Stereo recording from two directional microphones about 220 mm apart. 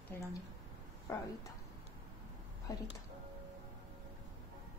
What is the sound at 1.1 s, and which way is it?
Speech, 15° left (ahead or behind).